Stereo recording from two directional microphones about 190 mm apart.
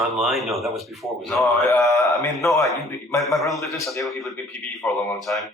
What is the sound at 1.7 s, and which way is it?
Speech, 15° left (ahead or behind).